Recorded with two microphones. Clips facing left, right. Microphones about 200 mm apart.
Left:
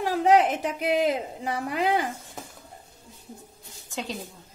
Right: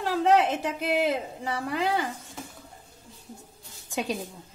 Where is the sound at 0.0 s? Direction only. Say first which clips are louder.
Left 2 dB; 15° left (ahead or behind).